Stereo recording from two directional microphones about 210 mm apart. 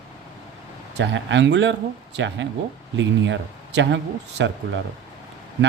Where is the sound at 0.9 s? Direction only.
55° right (ahead or behind).